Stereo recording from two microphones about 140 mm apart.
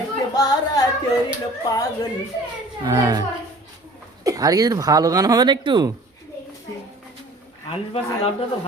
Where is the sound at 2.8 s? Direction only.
30° right (ahead or behind).